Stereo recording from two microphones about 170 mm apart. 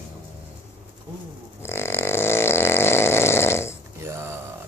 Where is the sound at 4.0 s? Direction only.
15° right (ahead or behind).